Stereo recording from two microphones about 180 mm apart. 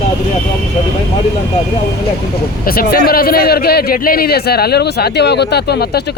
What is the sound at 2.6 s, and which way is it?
A man's voice, 55° left (ahead or behind).